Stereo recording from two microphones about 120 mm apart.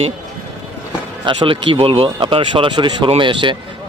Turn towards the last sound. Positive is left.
turn(degrees=-45)  # may be behind; listen again after turning